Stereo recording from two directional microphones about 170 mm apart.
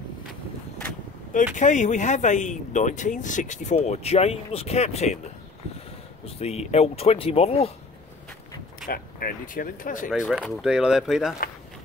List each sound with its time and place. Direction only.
1.3 s speech: 45° left (ahead or behind)
6.2 s speech: 35° left (ahead or behind)
8.8 s speech: 55° left (ahead or behind)
10.3 s speech: 5° right (ahead or behind)